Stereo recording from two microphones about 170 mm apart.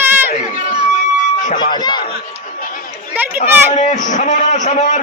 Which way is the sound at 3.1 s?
10° right (ahead or behind).